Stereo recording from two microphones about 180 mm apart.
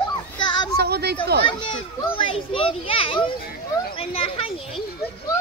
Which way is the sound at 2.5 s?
30° left (ahead or behind).